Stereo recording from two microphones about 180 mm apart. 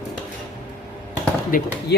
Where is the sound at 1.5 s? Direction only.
50° left (ahead or behind).